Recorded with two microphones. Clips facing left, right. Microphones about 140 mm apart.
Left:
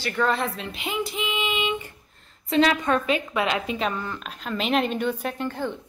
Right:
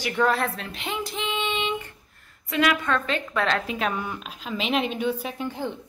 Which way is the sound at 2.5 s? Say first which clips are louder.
Left 3 dB; 30° left (ahead or behind).